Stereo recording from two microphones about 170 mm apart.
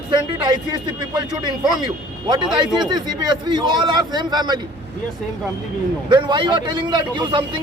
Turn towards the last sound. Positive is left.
turn(degrees=-25)  # may be behind; listen again after turning